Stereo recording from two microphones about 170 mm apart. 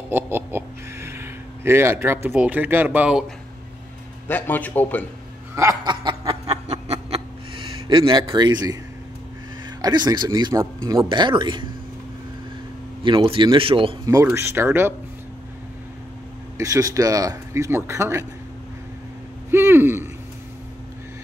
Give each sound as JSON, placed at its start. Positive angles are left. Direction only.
{"t": 0.1, "sound": "speech", "side_deg": -10}
{"t": 4.3, "sound": "a man's voice", "side_deg": 10}
{"t": 5.6, "sound": "snicker", "side_deg": -20}
{"t": 9.8, "sound": "speech", "side_deg": -25}
{"t": 13.0, "sound": "speech", "side_deg": -30}
{"t": 14.0, "sound": "speech", "side_deg": -15}
{"t": 16.5, "sound": "speech", "side_deg": -20}
{"t": 19.5, "sound": "speech", "side_deg": -15}